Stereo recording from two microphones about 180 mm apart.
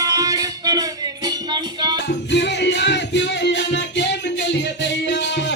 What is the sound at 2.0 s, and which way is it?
Music, 70° left (ahead or behind).